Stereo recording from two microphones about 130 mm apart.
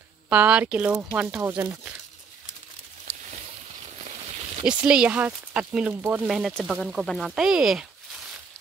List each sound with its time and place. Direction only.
0.3 s speech: 10° right (ahead or behind)
1.4 s speech: 20° right (ahead or behind)
4.6 s speech: 10° right (ahead or behind)